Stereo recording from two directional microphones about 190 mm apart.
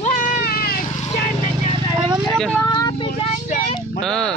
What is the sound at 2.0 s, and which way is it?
Vehicle, 20° right (ahead or behind).